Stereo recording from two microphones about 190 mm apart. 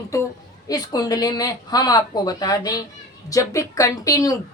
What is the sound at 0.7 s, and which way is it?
Speech, 20° left (ahead or behind).